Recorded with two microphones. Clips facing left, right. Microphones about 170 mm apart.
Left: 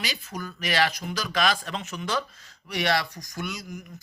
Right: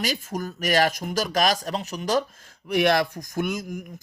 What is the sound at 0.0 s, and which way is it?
A man's voice, 45° right (ahead or behind).